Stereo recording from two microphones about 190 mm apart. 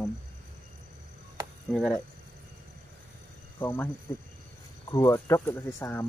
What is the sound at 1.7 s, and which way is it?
Speech, 5° left (ahead or behind).